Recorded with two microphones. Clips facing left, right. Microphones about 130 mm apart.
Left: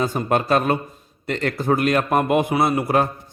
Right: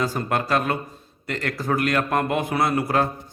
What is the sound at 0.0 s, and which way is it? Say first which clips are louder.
A man's voice: left 3 dB; 20° left (ahead or behind).